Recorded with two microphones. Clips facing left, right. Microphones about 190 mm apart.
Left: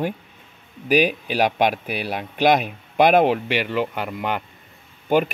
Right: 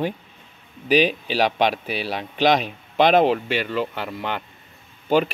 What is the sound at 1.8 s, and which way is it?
Speech, 55° left (ahead or behind).